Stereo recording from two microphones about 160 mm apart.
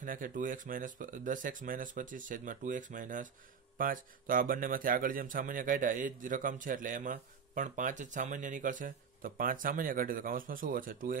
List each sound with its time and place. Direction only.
0.0 s speech: 55° right (ahead or behind)